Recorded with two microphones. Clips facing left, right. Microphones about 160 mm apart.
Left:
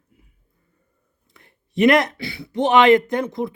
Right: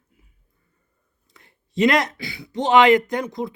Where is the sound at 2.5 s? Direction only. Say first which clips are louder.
Left 1 dB; 20° right (ahead or behind).